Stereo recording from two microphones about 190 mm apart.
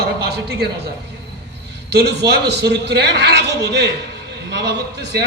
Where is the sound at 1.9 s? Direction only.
60° right (ahead or behind).